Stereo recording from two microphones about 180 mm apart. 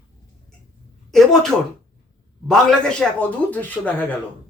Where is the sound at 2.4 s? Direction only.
5° left (ahead or behind).